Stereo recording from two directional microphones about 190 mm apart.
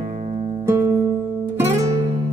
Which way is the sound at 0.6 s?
15° right (ahead or behind).